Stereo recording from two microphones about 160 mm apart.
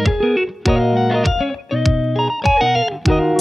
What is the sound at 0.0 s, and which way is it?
Music, centre (ahead or behind).